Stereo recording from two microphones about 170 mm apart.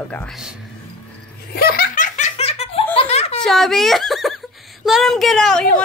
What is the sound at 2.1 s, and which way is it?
Laughter, 40° left (ahead or behind).